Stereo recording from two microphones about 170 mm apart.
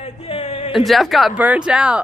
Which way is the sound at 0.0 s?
35° left (ahead or behind).